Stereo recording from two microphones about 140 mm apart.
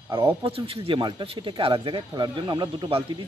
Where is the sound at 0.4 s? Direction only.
40° right (ahead or behind).